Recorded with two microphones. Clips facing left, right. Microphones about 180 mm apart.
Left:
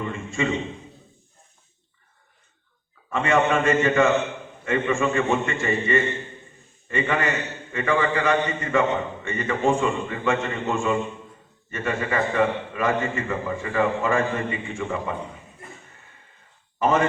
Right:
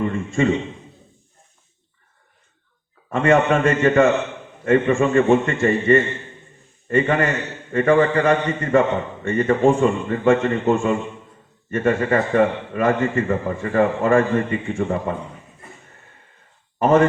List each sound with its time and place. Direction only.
0.0 s a man's voice: 50° right (ahead or behind)
3.1 s a man's voice: 50° right (ahead or behind)
5.3 s a man's voice: 50° right (ahead or behind)
16.7 s speech: 50° right (ahead or behind)